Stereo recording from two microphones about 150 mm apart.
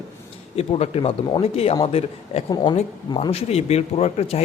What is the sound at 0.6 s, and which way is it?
A man's voice, 45° left (ahead or behind).